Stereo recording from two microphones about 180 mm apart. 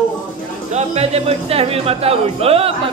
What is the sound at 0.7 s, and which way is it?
Speech, 35° right (ahead or behind).